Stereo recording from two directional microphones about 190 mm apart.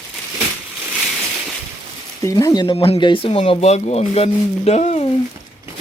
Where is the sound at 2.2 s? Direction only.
20° left (ahead or behind); by 5.0 s 35° left (ahead or behind).